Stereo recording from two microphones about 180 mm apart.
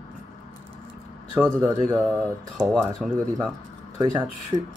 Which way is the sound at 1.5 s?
15° right (ahead or behind).